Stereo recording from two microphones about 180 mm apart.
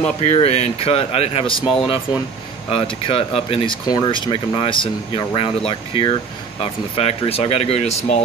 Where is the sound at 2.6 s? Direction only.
30° left (ahead or behind).